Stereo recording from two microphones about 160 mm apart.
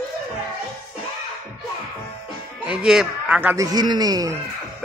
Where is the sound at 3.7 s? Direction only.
25° right (ahead or behind).